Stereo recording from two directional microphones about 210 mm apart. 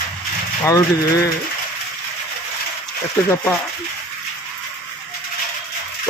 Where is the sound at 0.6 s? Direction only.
15° left (ahead or behind).